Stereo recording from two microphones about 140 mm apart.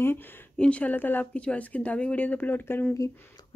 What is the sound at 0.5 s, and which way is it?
Speech, 10° left (ahead or behind).